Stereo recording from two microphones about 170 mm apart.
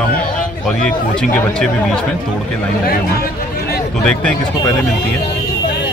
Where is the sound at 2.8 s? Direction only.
65° left (ahead or behind).